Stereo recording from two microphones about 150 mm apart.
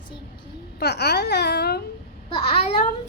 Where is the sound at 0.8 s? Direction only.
90° left.